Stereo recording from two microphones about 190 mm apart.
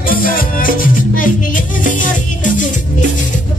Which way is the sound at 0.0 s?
50° left (ahead or behind).